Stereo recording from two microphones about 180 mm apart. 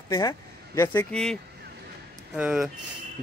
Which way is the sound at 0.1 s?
20° left (ahead or behind).